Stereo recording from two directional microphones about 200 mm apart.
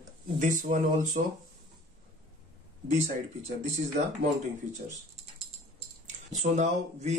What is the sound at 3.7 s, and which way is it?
Speech, 35° right (ahead or behind).